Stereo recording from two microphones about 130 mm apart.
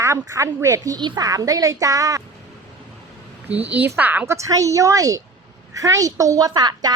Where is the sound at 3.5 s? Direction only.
10° right (ahead or behind).